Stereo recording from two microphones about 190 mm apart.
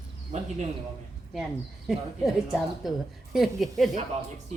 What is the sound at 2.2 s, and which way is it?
A woman's voice, centre (ahead or behind).